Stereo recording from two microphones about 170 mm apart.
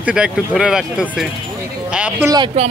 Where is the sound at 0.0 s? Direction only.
5° right (ahead or behind).